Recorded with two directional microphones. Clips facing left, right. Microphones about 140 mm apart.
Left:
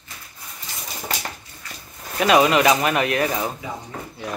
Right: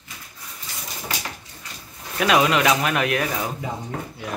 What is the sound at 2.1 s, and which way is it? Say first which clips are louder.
Speech: left 3 dB; centre (ahead or behind).